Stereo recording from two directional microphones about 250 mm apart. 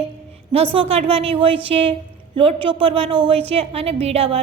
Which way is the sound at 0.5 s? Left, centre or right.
Right.